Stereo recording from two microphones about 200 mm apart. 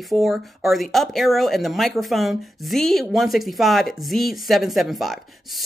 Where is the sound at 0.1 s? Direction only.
Centre (ahead or behind).